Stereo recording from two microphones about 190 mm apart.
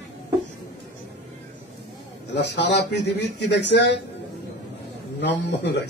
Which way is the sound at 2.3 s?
65° left (ahead or behind).